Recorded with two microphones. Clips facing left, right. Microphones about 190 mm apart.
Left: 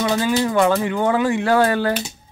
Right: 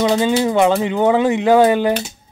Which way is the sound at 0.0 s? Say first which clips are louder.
Right 4 dB; 20° right (ahead or behind).